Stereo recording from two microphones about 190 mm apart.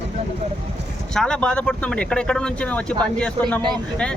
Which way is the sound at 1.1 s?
5° left (ahead or behind).